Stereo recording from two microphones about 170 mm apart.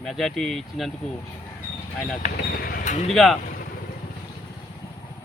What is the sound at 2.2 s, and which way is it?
Speech, 60° left (ahead or behind).